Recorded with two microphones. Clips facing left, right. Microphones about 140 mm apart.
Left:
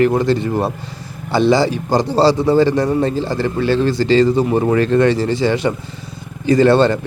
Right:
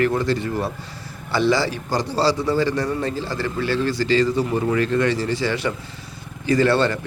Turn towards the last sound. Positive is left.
turn(degrees=25)  # may be behind; listen again after turning